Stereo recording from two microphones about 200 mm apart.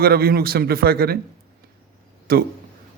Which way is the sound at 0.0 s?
50° right (ahead or behind).